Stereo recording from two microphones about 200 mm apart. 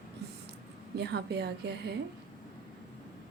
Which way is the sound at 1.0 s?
55° right (ahead or behind).